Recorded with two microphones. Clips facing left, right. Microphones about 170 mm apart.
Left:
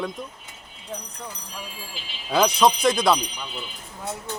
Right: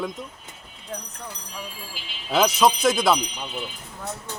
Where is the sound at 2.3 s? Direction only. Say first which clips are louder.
Even; centre (ahead or behind).